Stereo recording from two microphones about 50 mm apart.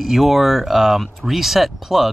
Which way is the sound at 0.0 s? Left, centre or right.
Centre.